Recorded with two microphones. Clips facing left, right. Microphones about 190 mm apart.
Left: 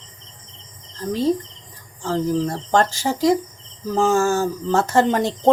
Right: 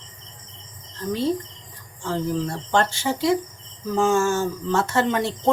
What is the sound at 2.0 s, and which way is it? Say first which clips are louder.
Speech: left 4 dB; 40° left (ahead or behind).